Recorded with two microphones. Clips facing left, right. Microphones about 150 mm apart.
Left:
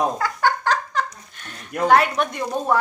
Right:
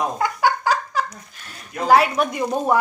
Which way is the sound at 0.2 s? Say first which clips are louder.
Right 1 dB; 10° right (ahead or behind).